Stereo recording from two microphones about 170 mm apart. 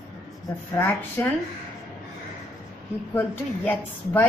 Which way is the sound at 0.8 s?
15° left (ahead or behind).